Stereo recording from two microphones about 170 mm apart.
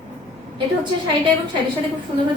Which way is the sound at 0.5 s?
25° right (ahead or behind).